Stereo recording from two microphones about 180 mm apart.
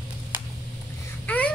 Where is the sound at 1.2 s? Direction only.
10° left (ahead or behind).